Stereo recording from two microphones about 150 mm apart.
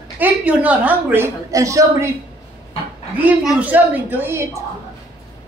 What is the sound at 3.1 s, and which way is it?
A woman's voice, 5° right (ahead or behind).